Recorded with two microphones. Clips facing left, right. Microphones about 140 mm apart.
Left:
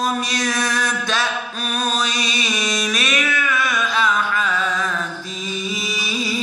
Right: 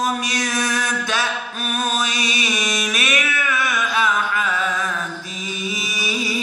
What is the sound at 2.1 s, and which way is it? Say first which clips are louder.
Chant: even; 25° left (ahead or behind).